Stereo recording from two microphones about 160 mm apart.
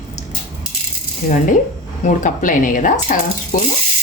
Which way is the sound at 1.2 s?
60° left (ahead or behind).